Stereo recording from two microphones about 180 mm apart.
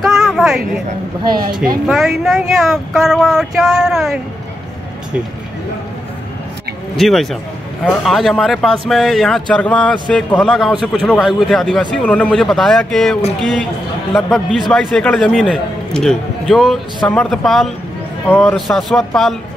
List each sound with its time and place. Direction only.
0.0 s a sound: centre (ahead or behind)
1.4 s speech: 55° right (ahead or behind)
1.9 s a man's voice: centre (ahead or behind)
7.0 s a man's voice: centre (ahead or behind)